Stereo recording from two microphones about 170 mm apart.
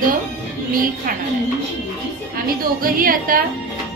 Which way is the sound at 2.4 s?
55° right (ahead or behind).